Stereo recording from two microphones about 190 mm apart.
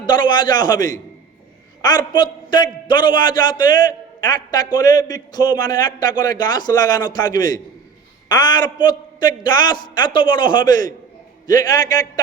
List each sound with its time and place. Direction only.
0.0 s a man's voice: 25° left (ahead or behind)